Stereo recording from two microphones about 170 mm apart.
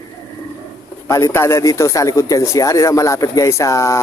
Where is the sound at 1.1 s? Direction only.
15° left (ahead or behind).